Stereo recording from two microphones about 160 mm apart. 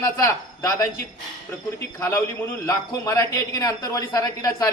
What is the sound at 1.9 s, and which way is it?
A man's voice, 15° left (ahead or behind).